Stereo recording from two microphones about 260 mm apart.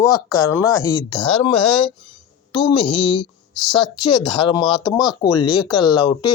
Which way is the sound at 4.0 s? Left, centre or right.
Centre.